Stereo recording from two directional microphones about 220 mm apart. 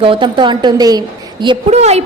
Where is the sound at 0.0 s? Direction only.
20° right (ahead or behind).